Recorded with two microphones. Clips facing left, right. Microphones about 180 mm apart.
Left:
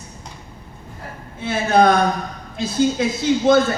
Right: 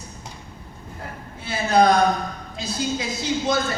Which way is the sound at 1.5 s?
55° left (ahead or behind).